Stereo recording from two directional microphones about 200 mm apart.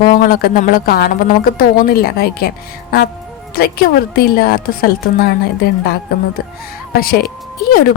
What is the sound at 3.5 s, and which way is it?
A woman's voice, 50° left (ahead or behind).